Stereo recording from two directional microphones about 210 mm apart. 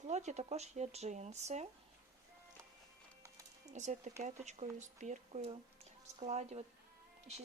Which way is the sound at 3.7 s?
35° right (ahead or behind).